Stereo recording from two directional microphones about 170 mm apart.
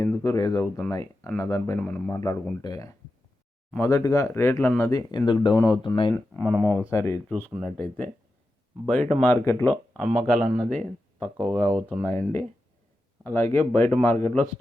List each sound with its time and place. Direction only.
0.0 s speech: 15° left (ahead or behind)
6.1 s speech: 10° left (ahead or behind)
10.0 s speech: centre (ahead or behind)